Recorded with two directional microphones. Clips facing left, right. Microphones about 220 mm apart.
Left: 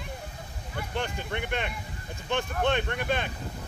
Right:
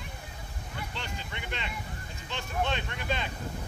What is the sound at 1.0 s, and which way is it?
Vehicle, 55° left (ahead or behind).